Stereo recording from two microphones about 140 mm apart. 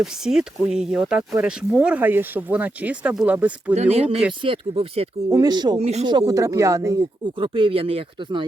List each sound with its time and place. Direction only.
0.0 s speech: 5° right (ahead or behind)
3.9 s speech: 50° right (ahead or behind)
5.3 s speech: 30° right (ahead or behind)
5.8 s speech: 50° right (ahead or behind)
6.1 s speech: 30° right (ahead or behind)
7.3 s speech: 40° right (ahead or behind)